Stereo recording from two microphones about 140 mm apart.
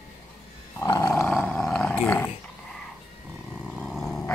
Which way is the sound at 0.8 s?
25° left (ahead or behind).